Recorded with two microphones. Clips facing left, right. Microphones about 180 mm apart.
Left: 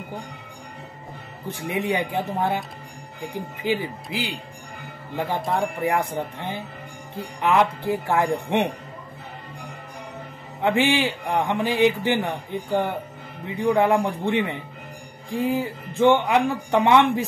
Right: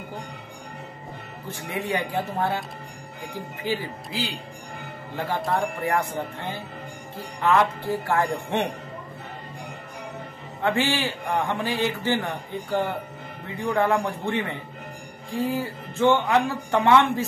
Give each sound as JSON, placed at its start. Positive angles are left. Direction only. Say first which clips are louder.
{"t": 1.5, "sound": "a man's voice", "louder": "left 3 dB", "side_deg": 20}
{"t": 10.6, "sound": "a man's voice", "louder": "left 3 dB", "side_deg": 20}